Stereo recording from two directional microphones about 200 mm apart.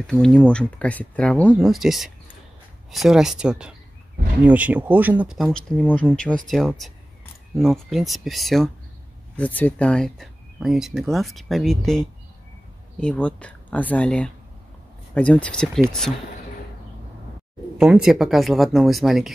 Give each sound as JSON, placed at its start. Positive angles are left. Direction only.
{"t": 0.0, "sound": "speech", "side_deg": 5}
{"t": 17.7, "sound": "speech", "side_deg": -5}